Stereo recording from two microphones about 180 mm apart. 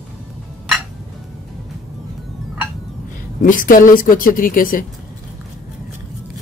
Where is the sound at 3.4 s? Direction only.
50° left (ahead or behind).